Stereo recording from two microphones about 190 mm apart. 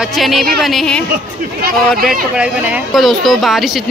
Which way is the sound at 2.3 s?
5° right (ahead or behind).